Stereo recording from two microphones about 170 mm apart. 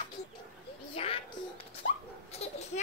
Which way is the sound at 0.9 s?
35° left (ahead or behind).